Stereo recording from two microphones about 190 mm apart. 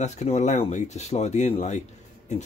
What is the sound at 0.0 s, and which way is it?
Speech, 35° left (ahead or behind).